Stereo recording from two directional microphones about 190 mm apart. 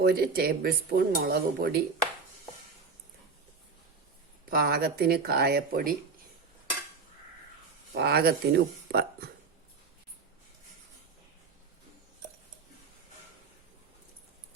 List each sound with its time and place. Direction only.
0.0 s speech: 55° right (ahead or behind)
4.4 s speech: 50° right (ahead or behind)
7.9 s speech: 60° right (ahead or behind)